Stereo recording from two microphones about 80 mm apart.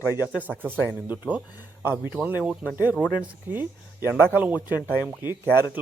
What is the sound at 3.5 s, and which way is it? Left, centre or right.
Speech, right.